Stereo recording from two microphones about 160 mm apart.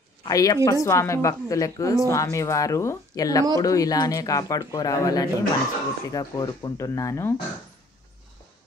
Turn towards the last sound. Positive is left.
turn(degrees=20)  # may be behind; listen again after turning